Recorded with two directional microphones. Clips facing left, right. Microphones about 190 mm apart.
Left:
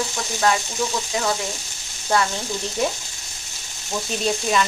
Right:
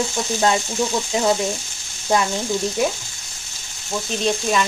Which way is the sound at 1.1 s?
25° right (ahead or behind).